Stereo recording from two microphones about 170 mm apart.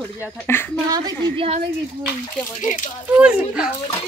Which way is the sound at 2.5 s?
45° left (ahead or behind).